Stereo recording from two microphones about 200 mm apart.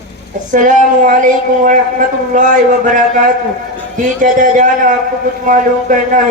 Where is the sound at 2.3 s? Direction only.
40° right (ahead or behind).